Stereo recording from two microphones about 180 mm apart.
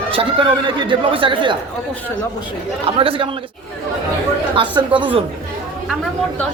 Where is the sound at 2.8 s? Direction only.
30° right (ahead or behind).